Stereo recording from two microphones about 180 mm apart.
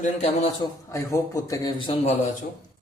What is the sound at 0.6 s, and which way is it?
A man's voice, 15° left (ahead or behind).